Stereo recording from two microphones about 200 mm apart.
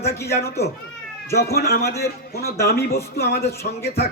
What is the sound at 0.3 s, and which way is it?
A man's voice, 55° left (ahead or behind).